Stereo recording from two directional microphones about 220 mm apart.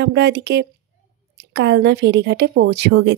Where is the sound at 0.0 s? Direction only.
50° right (ahead or behind).